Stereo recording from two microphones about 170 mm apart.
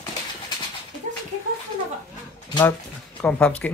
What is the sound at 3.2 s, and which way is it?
Speech, 5° left (ahead or behind).